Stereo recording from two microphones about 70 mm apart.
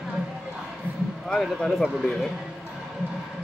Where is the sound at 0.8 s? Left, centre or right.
Right.